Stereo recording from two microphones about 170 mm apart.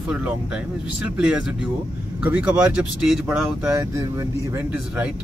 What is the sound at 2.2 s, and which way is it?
Speech, 10° right (ahead or behind).